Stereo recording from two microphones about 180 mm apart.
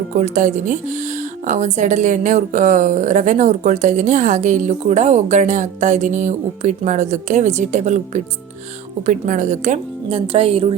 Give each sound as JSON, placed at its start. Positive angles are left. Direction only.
{"t": 0.1, "sound": "speech", "side_deg": -45}